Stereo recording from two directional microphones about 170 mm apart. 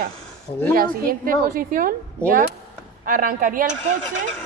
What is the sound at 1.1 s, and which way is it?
Speech, 60° right (ahead or behind).